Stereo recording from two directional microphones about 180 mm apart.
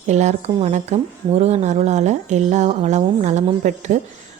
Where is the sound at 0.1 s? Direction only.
40° right (ahead or behind).